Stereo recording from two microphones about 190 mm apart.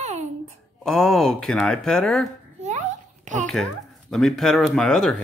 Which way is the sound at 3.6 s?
Centre (ahead or behind).